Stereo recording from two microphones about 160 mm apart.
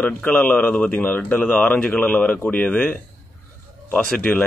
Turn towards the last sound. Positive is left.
turn(degrees=5)  # may be behind; listen again after turning